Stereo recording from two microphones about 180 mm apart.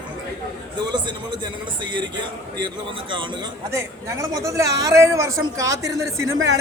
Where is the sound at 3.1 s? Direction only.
25° right (ahead or behind).